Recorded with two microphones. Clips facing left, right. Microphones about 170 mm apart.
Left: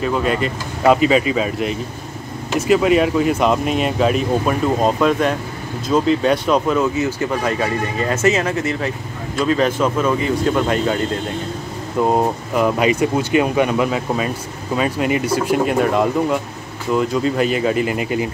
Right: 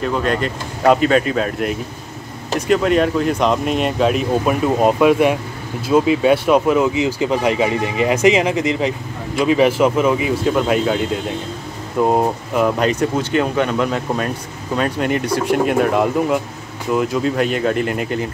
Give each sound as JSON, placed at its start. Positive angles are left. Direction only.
{"t": 0.0, "sound": "speech", "side_deg": 5}